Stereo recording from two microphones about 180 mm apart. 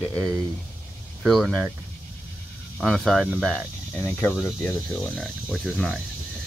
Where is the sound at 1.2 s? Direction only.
Centre (ahead or behind).